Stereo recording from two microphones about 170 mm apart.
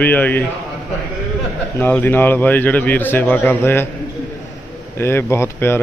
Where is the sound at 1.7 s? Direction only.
15° left (ahead or behind).